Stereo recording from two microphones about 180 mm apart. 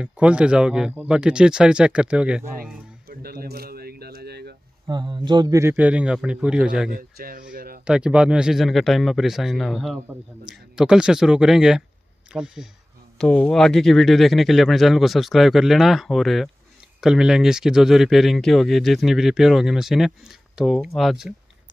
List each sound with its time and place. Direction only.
0.0 s speech: 5° right (ahead or behind)
3.1 s single-lens reflex camera: 55° right (ahead or behind)
4.8 s a man's voice: 25° right (ahead or behind); by 6.9 s 5° right (ahead or behind)
7.0 s speech: 50° right (ahead or behind)
7.5 s a sound: 55° right (ahead or behind)
7.8 s speech: 5° right (ahead or behind)